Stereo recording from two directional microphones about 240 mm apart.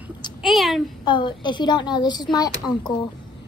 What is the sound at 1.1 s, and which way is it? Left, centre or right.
A woman's voice, centre.